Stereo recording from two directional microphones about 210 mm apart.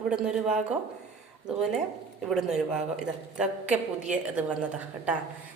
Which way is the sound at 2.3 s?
5° right (ahead or behind).